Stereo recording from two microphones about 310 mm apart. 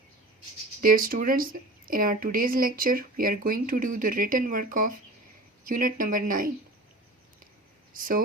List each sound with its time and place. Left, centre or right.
0.8 s speech: right
7.9 s speech: right